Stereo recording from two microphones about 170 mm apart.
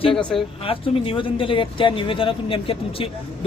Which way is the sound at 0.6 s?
30° left (ahead or behind).